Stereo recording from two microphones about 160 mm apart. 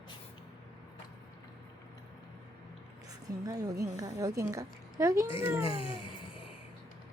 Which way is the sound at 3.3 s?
25° right (ahead or behind).